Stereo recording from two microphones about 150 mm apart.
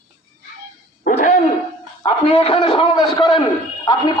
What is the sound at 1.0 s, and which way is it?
Owl, 60° left (ahead or behind).